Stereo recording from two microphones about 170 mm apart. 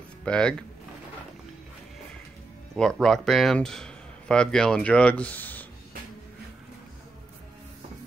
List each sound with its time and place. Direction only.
0.2 s speech: 5° left (ahead or behind)
2.7 s speech: 5° left (ahead or behind)